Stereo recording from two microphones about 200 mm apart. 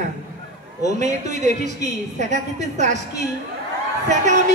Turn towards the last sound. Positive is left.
turn(degrees=-40)  # may be behind; listen again after turning